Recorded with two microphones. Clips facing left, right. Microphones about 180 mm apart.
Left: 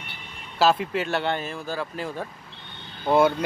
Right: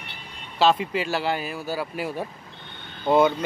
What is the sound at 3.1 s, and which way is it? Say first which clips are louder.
Speech: right 1 dB; 5° left (ahead or behind).